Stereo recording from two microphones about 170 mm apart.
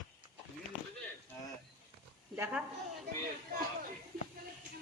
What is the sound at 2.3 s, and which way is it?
Speech, 10° right (ahead or behind).